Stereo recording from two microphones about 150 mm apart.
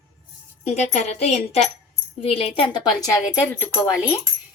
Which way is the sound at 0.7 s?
50° left (ahead or behind).